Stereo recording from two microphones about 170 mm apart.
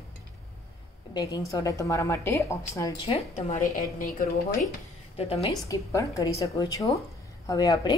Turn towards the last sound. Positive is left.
turn(degrees=25)  # may be behind; listen again after turning